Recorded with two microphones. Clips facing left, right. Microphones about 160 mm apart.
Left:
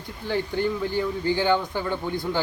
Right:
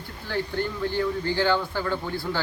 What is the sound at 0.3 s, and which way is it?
A man's voice, 15° left (ahead or behind).